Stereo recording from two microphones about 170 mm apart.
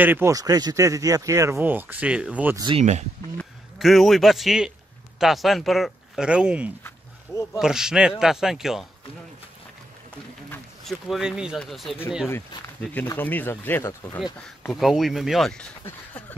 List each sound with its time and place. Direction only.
0.0 s speech: 15° right (ahead or behind)
2.5 s speech: 25° right (ahead or behind)
2.8 s speech: 40° right (ahead or behind)
3.3 s a man's voice: centre (ahead or behind)
10.8 s speech: centre (ahead or behind)
12.3 s speech: 10° left (ahead or behind)
14.7 s speech: centre (ahead or behind)
15.8 s a sound: 10° left (ahead or behind)